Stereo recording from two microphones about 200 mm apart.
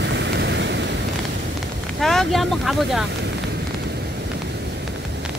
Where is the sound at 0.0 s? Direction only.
60° right (ahead or behind).